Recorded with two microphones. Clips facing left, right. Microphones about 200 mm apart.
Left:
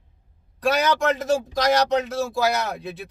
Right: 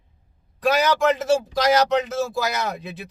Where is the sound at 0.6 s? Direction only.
Centre (ahead or behind).